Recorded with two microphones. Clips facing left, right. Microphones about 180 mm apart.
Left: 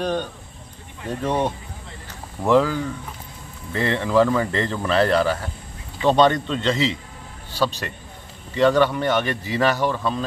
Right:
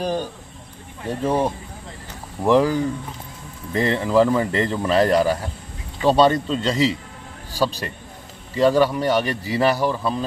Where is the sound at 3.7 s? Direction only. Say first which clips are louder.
Right 2 dB; 35° right (ahead or behind).